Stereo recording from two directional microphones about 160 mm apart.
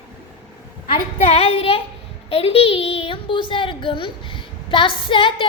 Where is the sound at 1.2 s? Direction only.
40° left (ahead or behind).